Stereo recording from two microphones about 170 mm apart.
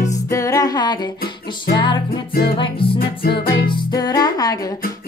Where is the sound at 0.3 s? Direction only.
20° left (ahead or behind).